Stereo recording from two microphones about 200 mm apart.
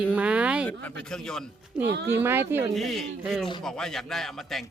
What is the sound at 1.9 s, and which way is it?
Speech, 60° right (ahead or behind).